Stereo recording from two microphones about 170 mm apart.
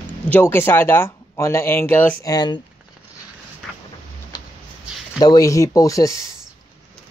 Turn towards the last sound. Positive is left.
turn(degrees=20)  # may be behind; listen again after turning